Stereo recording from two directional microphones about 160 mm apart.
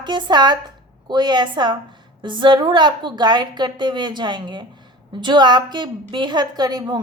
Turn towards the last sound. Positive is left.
turn(degrees=-25)  # may be behind; listen again after turning